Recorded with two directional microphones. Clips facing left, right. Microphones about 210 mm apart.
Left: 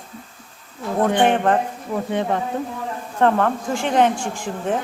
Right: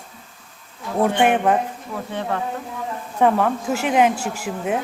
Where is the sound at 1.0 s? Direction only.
10° right (ahead or behind).